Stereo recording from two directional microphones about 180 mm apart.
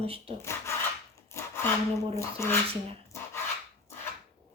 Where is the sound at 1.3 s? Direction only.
15° left (ahead or behind).